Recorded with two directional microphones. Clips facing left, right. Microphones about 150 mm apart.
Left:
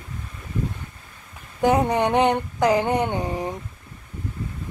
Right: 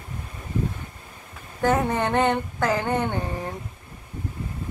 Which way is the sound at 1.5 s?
15° left (ahead or behind).